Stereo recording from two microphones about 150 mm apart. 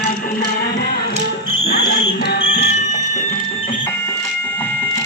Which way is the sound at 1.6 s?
90° left.